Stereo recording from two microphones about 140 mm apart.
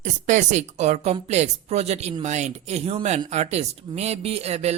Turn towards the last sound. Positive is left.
turn(degrees=-50)  # may be behind; listen again after turning